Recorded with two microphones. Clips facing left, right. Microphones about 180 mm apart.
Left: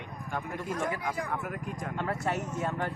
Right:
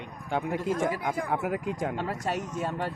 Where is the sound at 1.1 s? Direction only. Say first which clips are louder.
Right 5 dB; 60° right (ahead or behind); by 1.9 s 80° right.